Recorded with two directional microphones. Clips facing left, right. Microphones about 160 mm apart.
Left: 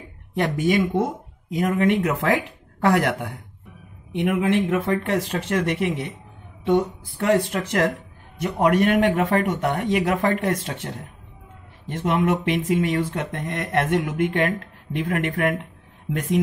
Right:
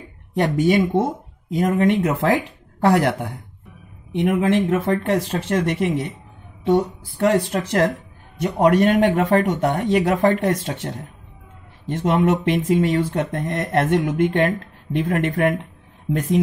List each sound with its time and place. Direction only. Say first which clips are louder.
0.4 s speech: right 3 dB; 35° right (ahead or behind)
11.9 s speech: right 3 dB; 35° right (ahead or behind)